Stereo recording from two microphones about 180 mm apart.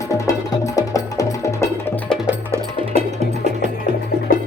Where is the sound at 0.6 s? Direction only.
20° left (ahead or behind).